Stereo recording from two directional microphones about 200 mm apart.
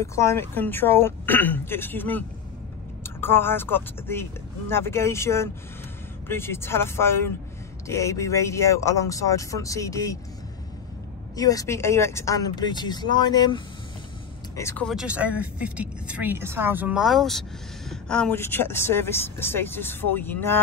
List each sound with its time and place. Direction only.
0.0 s speech: 15° left (ahead or behind)
11.3 s speech: 15° left (ahead or behind)
14.9 s a woman's voice: 5° right (ahead or behind)